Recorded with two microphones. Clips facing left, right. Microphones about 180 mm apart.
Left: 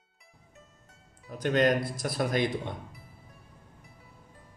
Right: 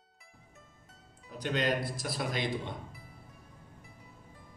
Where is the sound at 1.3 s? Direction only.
50° left (ahead or behind).